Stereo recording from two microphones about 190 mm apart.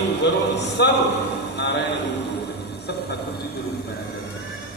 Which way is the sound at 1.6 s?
65° left (ahead or behind).